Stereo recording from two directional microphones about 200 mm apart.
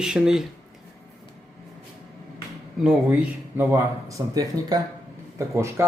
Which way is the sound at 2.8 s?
5° right (ahead or behind).